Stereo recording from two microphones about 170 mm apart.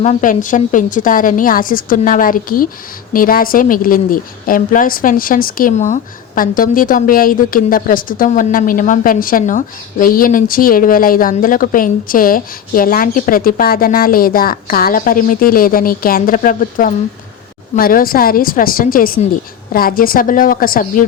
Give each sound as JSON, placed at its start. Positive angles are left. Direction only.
{"t": 0.0, "sound": "a woman's voice", "side_deg": 45}